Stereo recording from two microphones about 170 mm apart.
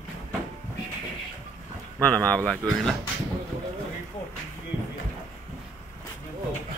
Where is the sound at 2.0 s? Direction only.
10° left (ahead or behind).